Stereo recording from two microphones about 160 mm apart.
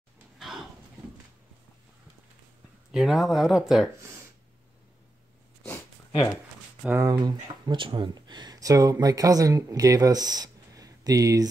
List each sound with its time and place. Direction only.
2.9 s speech: centre (ahead or behind)
6.8 s speech: 10° right (ahead or behind)
7.1 s speech: 25° right (ahead or behind)